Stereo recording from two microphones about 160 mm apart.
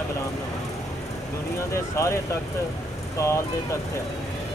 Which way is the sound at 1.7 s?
15° left (ahead or behind).